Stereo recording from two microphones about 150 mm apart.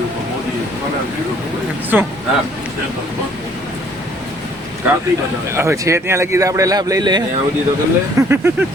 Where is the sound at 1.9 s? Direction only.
10° right (ahead or behind).